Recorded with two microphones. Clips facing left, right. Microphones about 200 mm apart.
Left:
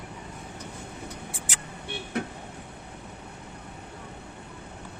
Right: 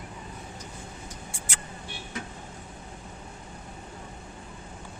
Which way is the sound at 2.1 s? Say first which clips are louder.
Left 8 dB; 60° left (ahead or behind).